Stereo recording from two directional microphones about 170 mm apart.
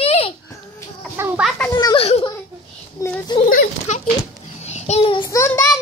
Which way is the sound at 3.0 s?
20° left (ahead or behind).